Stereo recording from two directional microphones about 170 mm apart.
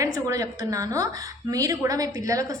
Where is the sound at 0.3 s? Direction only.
20° right (ahead or behind).